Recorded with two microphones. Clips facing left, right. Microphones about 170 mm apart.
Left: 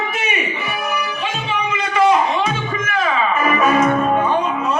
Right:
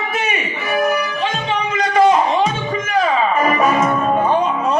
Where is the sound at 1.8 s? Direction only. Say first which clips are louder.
Right 2 dB; 40° right (ahead or behind).